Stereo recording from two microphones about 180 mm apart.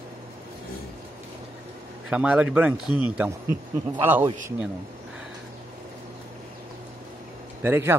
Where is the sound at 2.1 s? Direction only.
5° right (ahead or behind).